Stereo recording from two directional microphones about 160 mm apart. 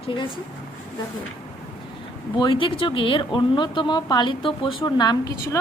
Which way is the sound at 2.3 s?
30° left (ahead or behind).